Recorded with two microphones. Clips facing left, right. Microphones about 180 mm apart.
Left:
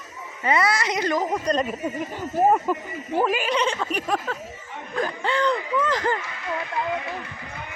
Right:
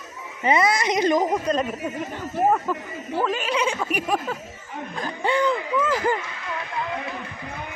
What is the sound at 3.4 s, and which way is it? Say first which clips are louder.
Speech: even; 5° right (ahead or behind).